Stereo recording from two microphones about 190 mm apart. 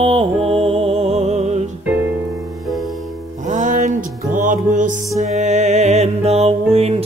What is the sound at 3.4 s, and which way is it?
Music, 40° right (ahead or behind).